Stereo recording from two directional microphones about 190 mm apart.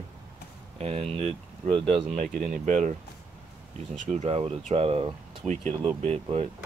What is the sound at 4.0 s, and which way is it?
Speech, 40° right (ahead or behind).